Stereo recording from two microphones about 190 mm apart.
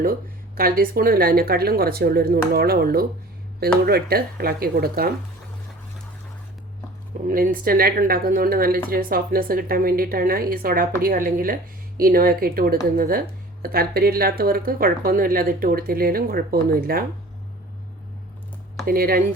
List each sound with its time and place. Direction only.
0.0 s speech: 50° right (ahead or behind)
7.3 s speech: 45° right (ahead or behind)
18.9 s speech: 50° right (ahead or behind)